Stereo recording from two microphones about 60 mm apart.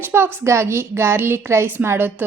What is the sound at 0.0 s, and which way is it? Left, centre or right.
A woman's voice, right.